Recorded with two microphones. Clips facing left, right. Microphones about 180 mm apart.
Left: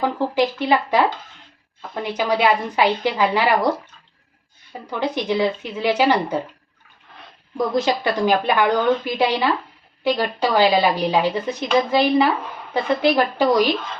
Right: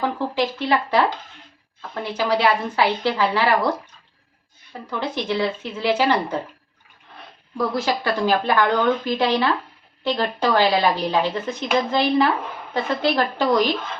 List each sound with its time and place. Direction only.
0.0 s a woman's voice: 15° left (ahead or behind)
2.1 s a woman's voice: 15° left (ahead or behind)
4.9 s a woman's voice: 15° left (ahead or behind)
7.5 s a woman's voice: 20° left (ahead or behind)